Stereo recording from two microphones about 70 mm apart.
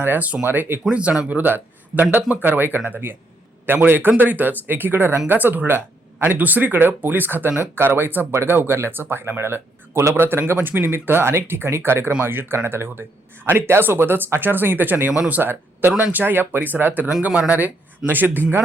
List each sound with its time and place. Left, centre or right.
0.0 s speech: right
0.9 s speech: centre
1.3 s speech: right
10.2 s speech: right